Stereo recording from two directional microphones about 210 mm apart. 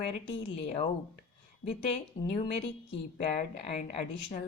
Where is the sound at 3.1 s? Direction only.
30° left (ahead or behind).